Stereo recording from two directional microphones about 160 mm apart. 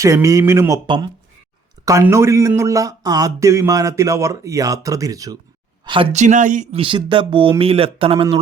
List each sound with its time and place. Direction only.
0.0 s speech: 20° right (ahead or behind)
6.1 s speech: 50° right (ahead or behind)
6.7 s speech: 30° right (ahead or behind)